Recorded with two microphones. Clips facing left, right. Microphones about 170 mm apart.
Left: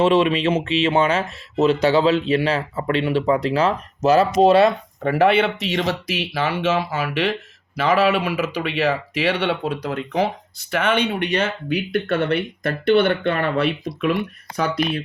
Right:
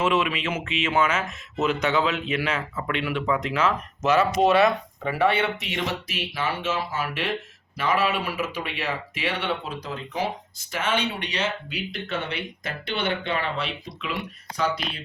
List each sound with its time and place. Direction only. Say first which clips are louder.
0.0 s speech: left 7 dB; 35° left (ahead or behind)
5.1 s speech: left 6 dB; 85° left; by 15.0 s 55° left (ahead or behind)